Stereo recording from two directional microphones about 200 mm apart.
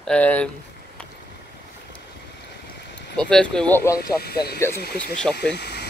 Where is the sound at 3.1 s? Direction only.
5° left (ahead or behind).